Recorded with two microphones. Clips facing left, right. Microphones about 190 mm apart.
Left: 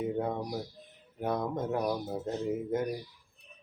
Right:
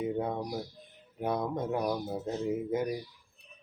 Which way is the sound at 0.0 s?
Centre (ahead or behind).